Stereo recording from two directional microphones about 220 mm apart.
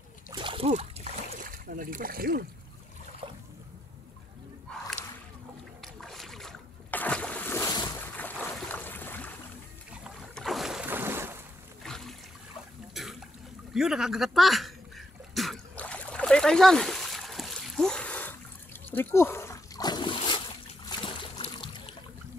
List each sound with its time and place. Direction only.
0.3 s splash: 25° right (ahead or behind); by 2.4 s 40° right (ahead or behind)
4.6 s a sound: 5° left (ahead or behind)
5.8 s boat: centre (ahead or behind)
11.8 s a sound: centre (ahead or behind)
18.9 s splash: 10° left (ahead or behind)
20.9 s boat: 25° left (ahead or behind)